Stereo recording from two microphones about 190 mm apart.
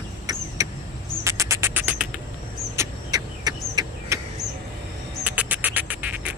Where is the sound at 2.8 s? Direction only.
20° right (ahead or behind).